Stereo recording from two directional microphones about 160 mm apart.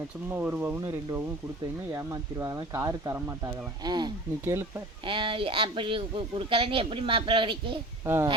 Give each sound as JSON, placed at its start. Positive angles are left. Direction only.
{"t": 0.3, "sound": "speech", "side_deg": -10}
{"t": 3.8, "sound": "speech", "side_deg": -25}
{"t": 8.0, "sound": "speech", "side_deg": -15}